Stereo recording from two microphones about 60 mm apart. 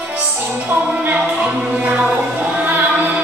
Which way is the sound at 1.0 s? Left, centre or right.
Right.